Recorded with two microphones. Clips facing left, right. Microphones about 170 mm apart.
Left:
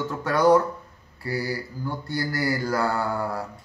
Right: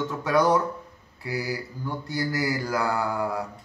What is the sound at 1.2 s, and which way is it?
Mantra, 20° right (ahead or behind).